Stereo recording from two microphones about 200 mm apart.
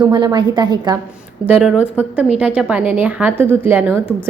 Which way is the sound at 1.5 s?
5° right (ahead or behind).